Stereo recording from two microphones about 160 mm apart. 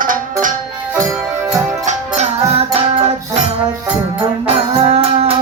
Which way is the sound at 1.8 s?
45° right (ahead or behind).